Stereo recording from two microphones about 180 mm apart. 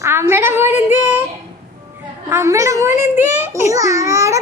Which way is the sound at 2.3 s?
15° right (ahead or behind).